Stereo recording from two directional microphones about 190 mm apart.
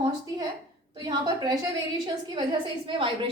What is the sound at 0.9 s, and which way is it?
A woman's voice, 25° right (ahead or behind).